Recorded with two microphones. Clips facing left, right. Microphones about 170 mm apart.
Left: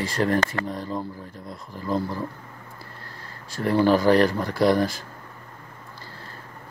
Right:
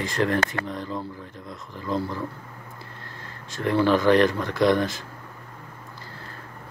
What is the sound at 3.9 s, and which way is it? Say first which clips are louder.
Speech: even; 35° left (ahead or behind).